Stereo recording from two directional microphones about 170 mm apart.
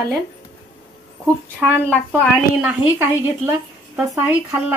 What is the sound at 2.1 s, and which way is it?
A woman's voice, 10° right (ahead or behind).